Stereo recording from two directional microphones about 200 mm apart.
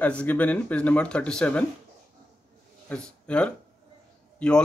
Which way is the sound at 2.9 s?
5° left (ahead or behind).